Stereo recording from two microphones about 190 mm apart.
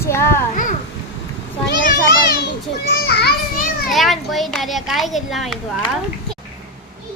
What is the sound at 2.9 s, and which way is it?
Speech, 55° left (ahead or behind).